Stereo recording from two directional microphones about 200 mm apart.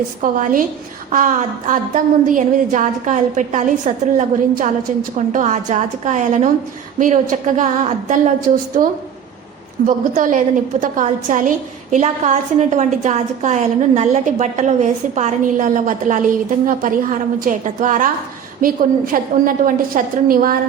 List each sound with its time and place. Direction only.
0.2 s a woman's voice: 40° right (ahead or behind)
10.2 s a woman's voice: 40° right (ahead or behind)